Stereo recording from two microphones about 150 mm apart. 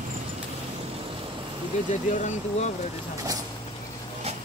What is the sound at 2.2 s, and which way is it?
Speech, 50° left (ahead or behind).